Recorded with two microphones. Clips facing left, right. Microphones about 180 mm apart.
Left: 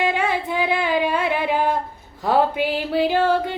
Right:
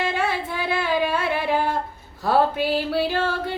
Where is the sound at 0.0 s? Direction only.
15° left (ahead or behind).